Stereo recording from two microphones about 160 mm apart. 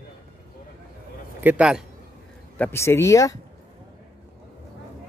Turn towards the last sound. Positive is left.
turn(degrees=20)  # may be behind; listen again after turning